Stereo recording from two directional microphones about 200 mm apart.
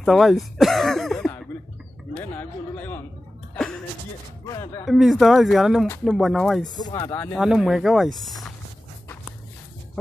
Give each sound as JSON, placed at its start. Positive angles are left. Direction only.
{"t": 0.0, "sound": "speech", "side_deg": 0}
{"t": 4.5, "sound": "speech", "side_deg": 20}
{"t": 4.8, "sound": "speech", "side_deg": 0}
{"t": 6.8, "sound": "speech", "side_deg": 20}
{"t": 7.3, "sound": "speech", "side_deg": 0}